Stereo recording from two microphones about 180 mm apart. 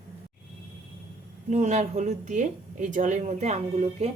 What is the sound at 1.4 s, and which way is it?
A woman's voice, 40° right (ahead or behind).